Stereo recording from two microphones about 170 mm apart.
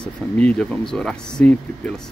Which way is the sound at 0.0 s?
5° left (ahead or behind).